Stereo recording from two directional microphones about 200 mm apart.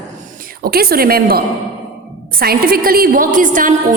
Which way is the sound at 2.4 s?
50° right (ahead or behind).